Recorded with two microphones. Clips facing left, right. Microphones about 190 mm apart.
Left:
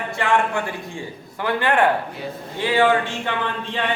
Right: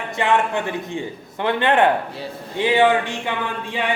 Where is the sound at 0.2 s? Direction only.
20° right (ahead or behind).